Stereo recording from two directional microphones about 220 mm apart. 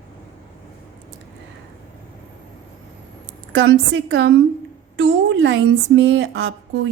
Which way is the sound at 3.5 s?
55° right (ahead or behind).